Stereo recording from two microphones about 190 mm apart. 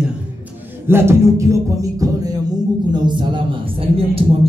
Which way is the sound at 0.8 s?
15° right (ahead or behind).